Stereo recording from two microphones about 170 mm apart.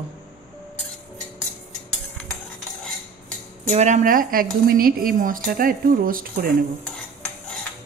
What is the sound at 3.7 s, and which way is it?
Speech, 45° right (ahead or behind).